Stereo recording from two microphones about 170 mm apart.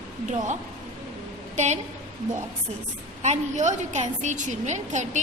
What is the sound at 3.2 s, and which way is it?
A woman's voice, 45° right (ahead or behind).